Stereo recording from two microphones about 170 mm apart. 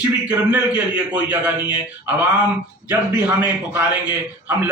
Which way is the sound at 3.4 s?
10° right (ahead or behind).